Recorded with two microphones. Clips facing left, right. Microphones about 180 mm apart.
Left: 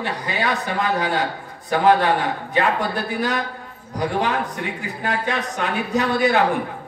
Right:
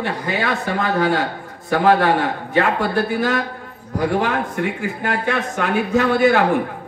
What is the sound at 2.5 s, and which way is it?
Speech, 15° left (ahead or behind).